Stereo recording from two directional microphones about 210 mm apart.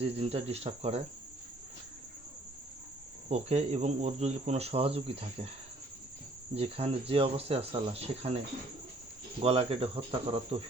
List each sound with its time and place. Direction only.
0.0 s speech: 30° right (ahead or behind)
3.2 s speech: 30° right (ahead or behind)
6.5 s speech: 30° right (ahead or behind)
9.4 s speech: 30° right (ahead or behind)